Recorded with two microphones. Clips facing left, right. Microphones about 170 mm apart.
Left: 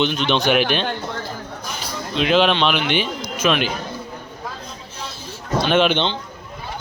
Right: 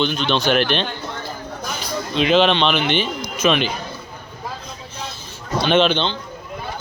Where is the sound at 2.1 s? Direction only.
5° left (ahead or behind).